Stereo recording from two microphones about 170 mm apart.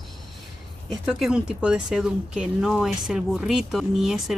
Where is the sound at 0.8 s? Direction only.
Centre (ahead or behind).